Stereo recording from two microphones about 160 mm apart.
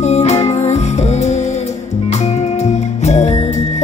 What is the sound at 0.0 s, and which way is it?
Music, 45° left (ahead or behind).